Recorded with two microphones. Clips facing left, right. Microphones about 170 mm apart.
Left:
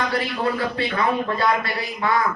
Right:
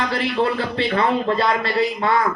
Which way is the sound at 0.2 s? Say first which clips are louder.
Right 3 dB; 25° right (ahead or behind).